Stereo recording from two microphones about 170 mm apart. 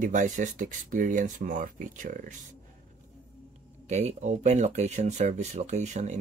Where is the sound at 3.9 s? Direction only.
40° right (ahead or behind).